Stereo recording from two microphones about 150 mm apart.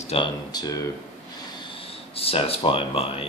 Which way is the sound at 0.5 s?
25° left (ahead or behind).